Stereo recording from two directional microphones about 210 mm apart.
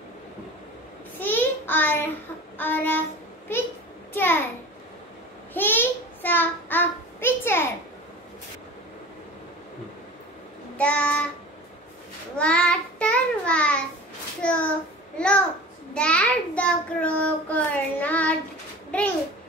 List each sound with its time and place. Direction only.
1.2 s child singing: 10° left (ahead or behind)
3.5 s a sound: 10° left (ahead or behind)
5.5 s child singing: 10° left (ahead or behind)
10.8 s child singing: 5° left (ahead or behind)
12.4 s child singing: 5° left (ahead or behind)
15.1 s a sound: 5° left (ahead or behind)
15.9 s child singing: 5° left (ahead or behind)
18.9 s babbling: 5° left (ahead or behind)